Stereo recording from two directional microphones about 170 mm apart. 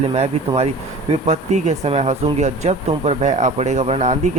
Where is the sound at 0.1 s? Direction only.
40° right (ahead or behind).